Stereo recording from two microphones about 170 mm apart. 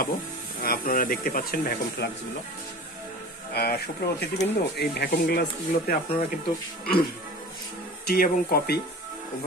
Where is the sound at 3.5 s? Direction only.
70° left (ahead or behind).